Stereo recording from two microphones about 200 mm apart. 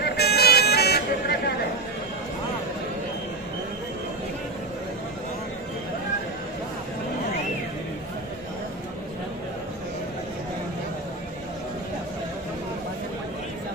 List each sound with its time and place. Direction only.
0.0 s vehicle: 55° left (ahead or behind)